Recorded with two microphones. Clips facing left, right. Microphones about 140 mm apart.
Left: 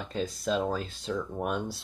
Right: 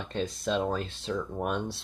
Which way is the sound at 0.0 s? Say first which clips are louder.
Even; 5° left (ahead or behind).